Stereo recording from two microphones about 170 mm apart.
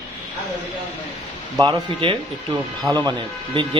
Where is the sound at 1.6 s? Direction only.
25° right (ahead or behind).